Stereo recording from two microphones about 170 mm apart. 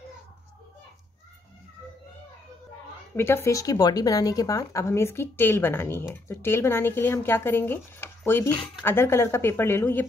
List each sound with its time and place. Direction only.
3.2 s a woman's voice: 15° left (ahead or behind)